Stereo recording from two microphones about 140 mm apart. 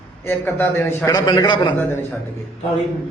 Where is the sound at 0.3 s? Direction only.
15° left (ahead or behind).